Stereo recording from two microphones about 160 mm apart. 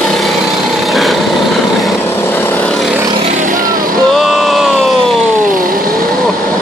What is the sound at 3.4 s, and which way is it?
Vehicle, 55° right (ahead or behind).